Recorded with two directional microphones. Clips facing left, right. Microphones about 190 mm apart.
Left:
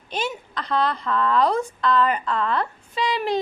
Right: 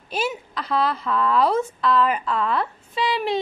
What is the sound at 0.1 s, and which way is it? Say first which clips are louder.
A woman's voice: right 2 dB; 5° right (ahead or behind).